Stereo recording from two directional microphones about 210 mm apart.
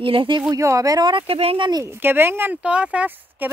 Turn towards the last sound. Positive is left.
turn(degrees=-10)  # may be behind; listen again after turning